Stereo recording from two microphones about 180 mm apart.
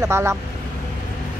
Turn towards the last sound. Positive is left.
turn(degrees=-15)  # may be behind; listen again after turning